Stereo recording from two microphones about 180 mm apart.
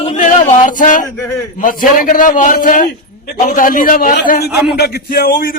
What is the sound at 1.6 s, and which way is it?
A man's voice, 45° left (ahead or behind).